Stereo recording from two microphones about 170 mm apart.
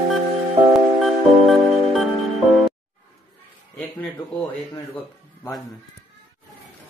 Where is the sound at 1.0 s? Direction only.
Centre (ahead or behind).